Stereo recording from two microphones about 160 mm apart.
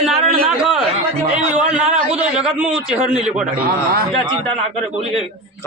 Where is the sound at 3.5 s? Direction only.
65° right (ahead or behind).